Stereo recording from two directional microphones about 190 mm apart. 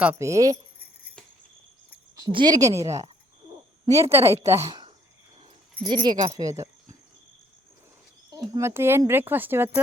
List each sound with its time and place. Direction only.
0.0 s speech: 10° right (ahead or behind)
2.1 s speech: 20° right (ahead or behind)
8.4 s speech: 15° right (ahead or behind)